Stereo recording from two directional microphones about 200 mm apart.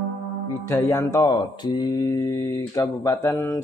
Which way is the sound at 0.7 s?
15° left (ahead or behind).